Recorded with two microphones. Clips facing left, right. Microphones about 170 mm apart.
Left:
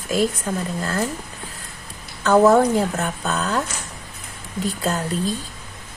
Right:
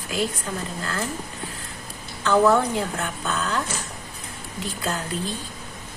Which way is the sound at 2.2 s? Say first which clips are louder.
Left 4 dB; 45° left (ahead or behind).